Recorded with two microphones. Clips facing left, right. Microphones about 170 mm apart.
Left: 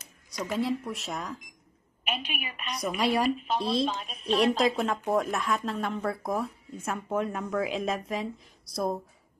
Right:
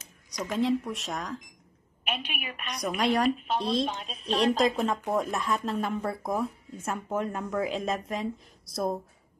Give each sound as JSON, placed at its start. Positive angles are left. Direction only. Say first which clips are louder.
{"t": 0.5, "sound": "a woman's voice", "louder": "right 3 dB", "side_deg": 5}
{"t": 4.2, "sound": "speech", "louder": "left 1 dB", "side_deg": -40}
{"t": 4.6, "sound": "a woman's voice", "louder": "right 1 dB", "side_deg": 0}